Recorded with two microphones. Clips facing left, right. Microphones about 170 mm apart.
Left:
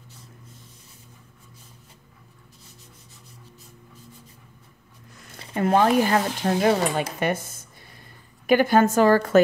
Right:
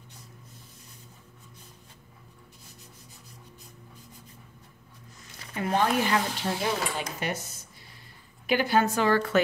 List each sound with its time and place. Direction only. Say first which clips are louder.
5.5 s speech: left 7 dB; 50° left (ahead or behind)